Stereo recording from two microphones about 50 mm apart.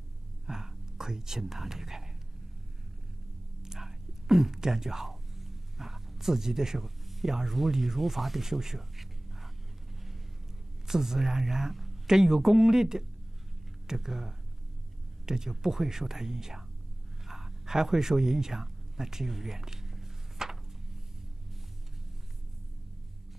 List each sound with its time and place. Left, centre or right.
0.5 s whispering: centre
3.6 s whispering: centre
10.9 s speech: centre
17.3 s a sound: centre